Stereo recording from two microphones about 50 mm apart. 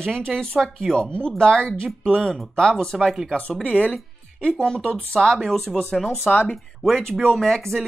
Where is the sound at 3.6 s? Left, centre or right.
Left.